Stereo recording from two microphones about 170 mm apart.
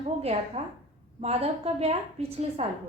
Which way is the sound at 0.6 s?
35° right (ahead or behind).